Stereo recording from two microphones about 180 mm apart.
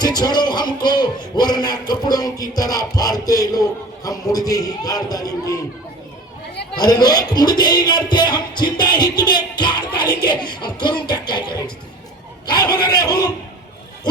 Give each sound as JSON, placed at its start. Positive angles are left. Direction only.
{"t": 0.0, "sound": "speech", "side_deg": 20}
{"t": 6.7, "sound": "speech", "side_deg": 20}